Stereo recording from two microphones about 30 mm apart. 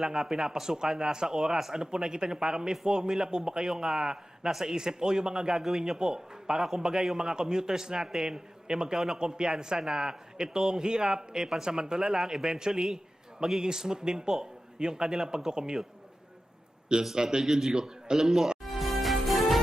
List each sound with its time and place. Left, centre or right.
0.0 s a man's voice: centre
16.9 s a man's voice: right
17.7 s a man's voice: right
18.6 s music: centre